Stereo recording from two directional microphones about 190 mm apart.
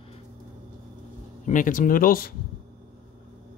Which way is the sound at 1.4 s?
45° left (ahead or behind).